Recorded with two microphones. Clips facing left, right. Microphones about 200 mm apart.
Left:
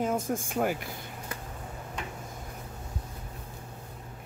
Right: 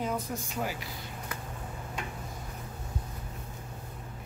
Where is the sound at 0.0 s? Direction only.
50° left (ahead or behind).